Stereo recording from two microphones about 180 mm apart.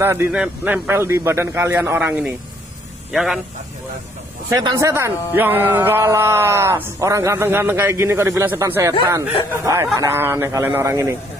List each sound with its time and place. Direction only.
0.0 s a man's voice: 15° right (ahead or behind)
4.6 s speech: 20° right (ahead or behind)